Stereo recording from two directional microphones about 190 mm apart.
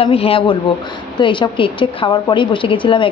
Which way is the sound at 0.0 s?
30° left (ahead or behind).